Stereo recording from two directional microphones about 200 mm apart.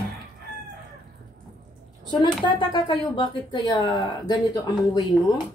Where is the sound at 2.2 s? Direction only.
20° left (ahead or behind).